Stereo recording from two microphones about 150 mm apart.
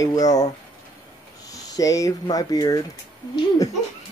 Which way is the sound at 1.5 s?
25° left (ahead or behind).